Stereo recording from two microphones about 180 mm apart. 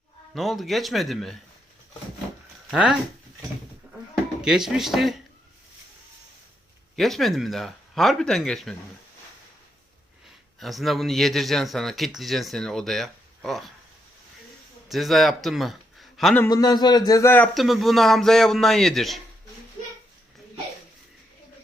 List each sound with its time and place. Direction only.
0.3 s speech: centre (ahead or behind)
2.6 s speech: 5° right (ahead or behind)
3.9 s goat: 5° right (ahead or behind)
4.4 s speech: 5° right (ahead or behind)
6.9 s speech: centre (ahead or behind)
10.6 s speech: centre (ahead or behind)
14.8 s speech: centre (ahead or behind)
16.4 s speech: 20° left (ahead or behind)
17.5 s speech: centre (ahead or behind)